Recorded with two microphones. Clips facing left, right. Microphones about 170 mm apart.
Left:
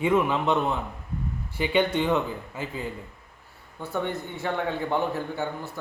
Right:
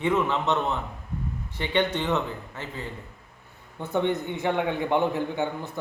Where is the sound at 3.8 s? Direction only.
20° right (ahead or behind).